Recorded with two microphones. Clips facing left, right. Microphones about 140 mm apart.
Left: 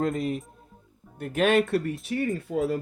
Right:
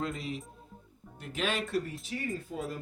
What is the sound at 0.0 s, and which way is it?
Speech, 50° left (ahead or behind).